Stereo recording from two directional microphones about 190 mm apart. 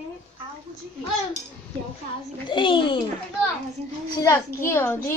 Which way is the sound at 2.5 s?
25° left (ahead or behind).